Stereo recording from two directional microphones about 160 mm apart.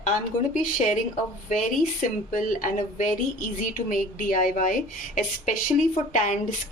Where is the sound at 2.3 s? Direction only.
55° left (ahead or behind).